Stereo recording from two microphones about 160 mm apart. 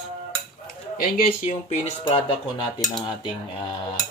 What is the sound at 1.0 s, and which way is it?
Speech, 60° left (ahead or behind).